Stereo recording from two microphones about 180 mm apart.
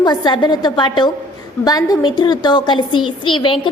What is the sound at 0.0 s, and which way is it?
A woman's voice, 25° left (ahead or behind).